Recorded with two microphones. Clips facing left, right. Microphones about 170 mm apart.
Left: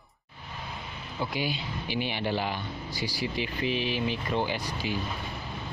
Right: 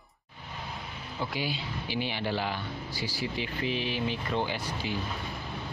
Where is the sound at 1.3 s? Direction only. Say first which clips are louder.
Left 2 dB; 15° left (ahead or behind).